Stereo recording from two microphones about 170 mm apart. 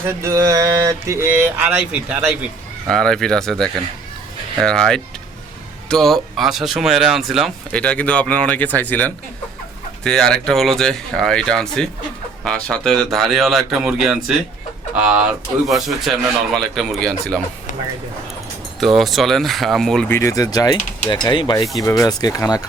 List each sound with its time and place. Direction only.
0.2 s speech: 20° right (ahead or behind)
2.8 s speech: 5° left (ahead or behind)
18.9 s speech: centre (ahead or behind); by 22.6 s 20° left (ahead or behind)